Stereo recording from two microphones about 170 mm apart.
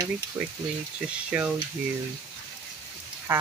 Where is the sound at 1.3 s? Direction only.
5° right (ahead or behind).